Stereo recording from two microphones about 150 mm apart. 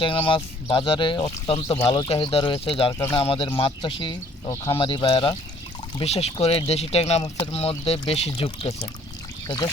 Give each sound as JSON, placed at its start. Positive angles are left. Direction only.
{"t": 0.0, "sound": "speech", "side_deg": 35}
{"t": 6.0, "sound": "speech", "side_deg": 45}